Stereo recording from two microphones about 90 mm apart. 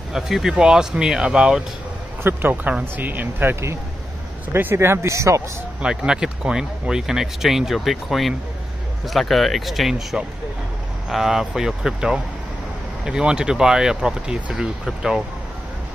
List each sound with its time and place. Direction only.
0.1 s speech: 5° right (ahead or behind)
2.2 s speech: 20° right (ahead or behind)
5.8 s speech: 10° right (ahead or behind)